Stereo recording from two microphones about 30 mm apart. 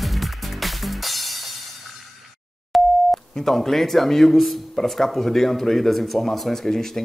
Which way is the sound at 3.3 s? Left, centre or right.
Centre.